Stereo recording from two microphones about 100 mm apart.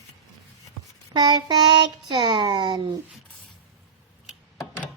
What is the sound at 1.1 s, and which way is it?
Speech, 45° right (ahead or behind).